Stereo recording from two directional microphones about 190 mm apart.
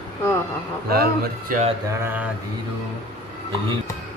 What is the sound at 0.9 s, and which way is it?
Speech, 55° right (ahead or behind).